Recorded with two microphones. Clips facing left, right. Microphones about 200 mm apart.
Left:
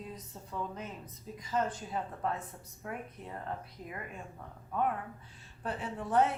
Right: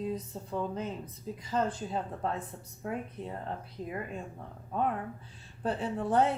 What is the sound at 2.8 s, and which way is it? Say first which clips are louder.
Speech: right 5 dB; 30° right (ahead or behind).